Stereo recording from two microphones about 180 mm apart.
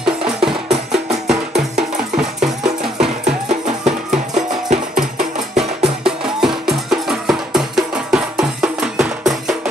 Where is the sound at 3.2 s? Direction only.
40° right (ahead or behind).